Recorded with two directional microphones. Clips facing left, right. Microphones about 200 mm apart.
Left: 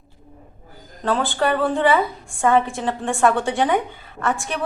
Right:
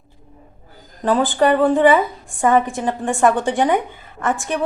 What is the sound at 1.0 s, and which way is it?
A woman's voice, 15° right (ahead or behind).